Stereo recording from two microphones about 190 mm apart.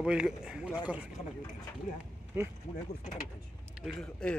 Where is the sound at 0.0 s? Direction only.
5° right (ahead or behind).